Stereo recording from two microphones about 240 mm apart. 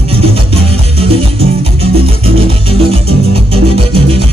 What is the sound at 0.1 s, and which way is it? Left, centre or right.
Music, right.